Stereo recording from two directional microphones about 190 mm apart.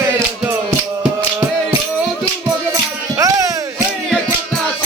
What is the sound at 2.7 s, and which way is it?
Music, 15° right (ahead or behind).